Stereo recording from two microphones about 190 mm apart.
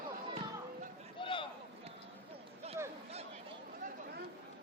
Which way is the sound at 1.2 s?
25° left (ahead or behind).